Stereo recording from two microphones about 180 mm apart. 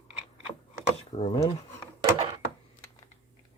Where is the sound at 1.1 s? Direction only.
35° left (ahead or behind).